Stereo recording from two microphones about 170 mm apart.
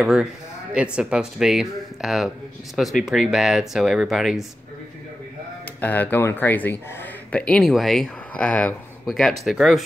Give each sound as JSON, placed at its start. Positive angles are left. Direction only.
{"t": 0.0, "sound": "speech", "side_deg": -5}
{"t": 5.8, "sound": "speech", "side_deg": 10}